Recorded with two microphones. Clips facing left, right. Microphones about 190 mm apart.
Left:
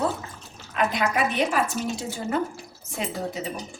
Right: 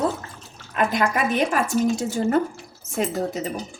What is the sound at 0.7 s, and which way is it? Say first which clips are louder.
A woman's voice: right 2 dB; 50° right (ahead or behind).